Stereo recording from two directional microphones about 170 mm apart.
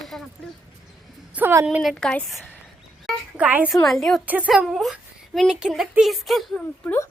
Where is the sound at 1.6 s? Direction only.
Centre (ahead or behind).